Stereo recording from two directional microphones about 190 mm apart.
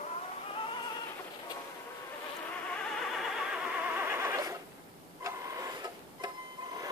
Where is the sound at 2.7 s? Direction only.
Centre (ahead or behind).